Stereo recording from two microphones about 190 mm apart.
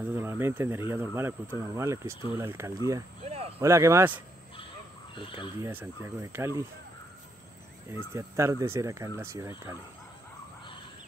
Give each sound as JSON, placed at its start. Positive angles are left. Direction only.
{"t": 0.0, "sound": "speech", "side_deg": -15}
{"t": 3.3, "sound": "speech", "side_deg": -30}
{"t": 3.6, "sound": "speech", "side_deg": -15}
{"t": 5.1, "sound": "speech", "side_deg": 25}
{"t": 5.6, "sound": "speech", "side_deg": -10}
{"t": 7.9, "sound": "speech", "side_deg": -15}